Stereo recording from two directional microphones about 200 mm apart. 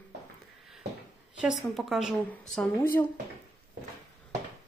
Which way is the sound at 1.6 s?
Centre (ahead or behind).